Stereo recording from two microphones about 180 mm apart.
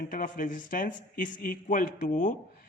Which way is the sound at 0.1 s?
50° left (ahead or behind).